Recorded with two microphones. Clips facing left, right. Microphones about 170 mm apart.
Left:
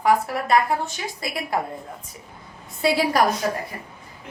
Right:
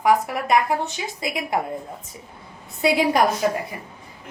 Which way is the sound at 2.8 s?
20° right (ahead or behind).